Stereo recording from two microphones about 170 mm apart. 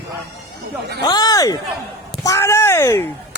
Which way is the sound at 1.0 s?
20° left (ahead or behind).